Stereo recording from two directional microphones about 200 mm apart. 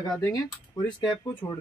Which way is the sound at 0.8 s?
20° left (ahead or behind).